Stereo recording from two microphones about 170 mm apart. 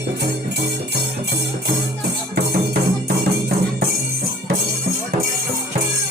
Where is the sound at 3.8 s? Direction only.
60° right (ahead or behind).